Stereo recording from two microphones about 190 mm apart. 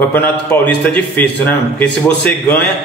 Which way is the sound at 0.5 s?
10° left (ahead or behind).